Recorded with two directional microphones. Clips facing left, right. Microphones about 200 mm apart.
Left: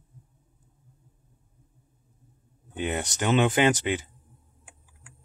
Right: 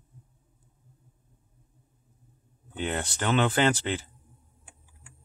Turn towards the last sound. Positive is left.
turn(degrees=15)  # may be behind; listen again after turning